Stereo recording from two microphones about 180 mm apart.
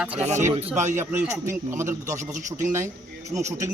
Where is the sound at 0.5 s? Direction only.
40° right (ahead or behind).